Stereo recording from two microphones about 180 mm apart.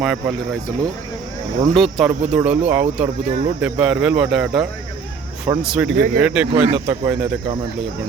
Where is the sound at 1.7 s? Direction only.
Centre (ahead or behind).